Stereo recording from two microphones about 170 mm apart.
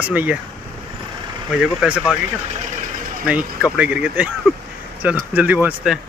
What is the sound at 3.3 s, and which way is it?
Speech, 5° right (ahead or behind).